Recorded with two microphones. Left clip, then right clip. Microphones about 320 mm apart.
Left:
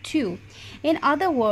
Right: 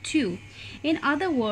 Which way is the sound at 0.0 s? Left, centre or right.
Centre.